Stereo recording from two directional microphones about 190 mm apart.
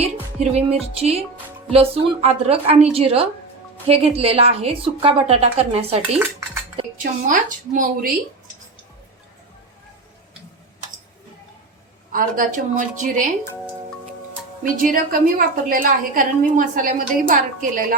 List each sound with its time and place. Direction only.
0.3 s a woman's voice: 35° right (ahead or behind)
7.0 s a woman's voice: 45° right (ahead or behind)
12.1 s a woman's voice: 45° right (ahead or behind)
14.6 s a woman's voice: 45° right (ahead or behind)